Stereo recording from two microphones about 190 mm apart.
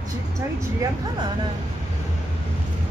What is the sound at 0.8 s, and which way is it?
Speech, 25° right (ahead or behind).